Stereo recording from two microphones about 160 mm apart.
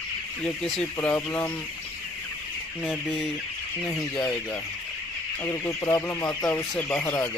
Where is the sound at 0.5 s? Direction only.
Centre (ahead or behind).